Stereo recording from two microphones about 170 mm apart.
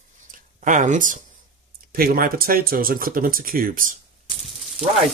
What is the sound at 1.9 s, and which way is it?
Speech, 60° right (ahead or behind).